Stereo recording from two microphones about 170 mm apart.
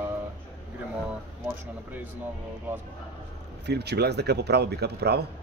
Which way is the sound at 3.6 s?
75° right (ahead or behind).